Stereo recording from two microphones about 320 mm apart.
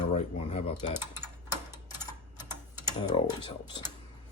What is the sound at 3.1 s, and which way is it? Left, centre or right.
Speech, centre.